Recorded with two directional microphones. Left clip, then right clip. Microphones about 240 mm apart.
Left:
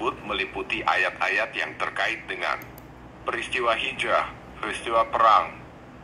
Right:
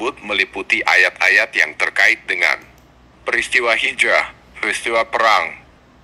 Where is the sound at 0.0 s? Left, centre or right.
Right.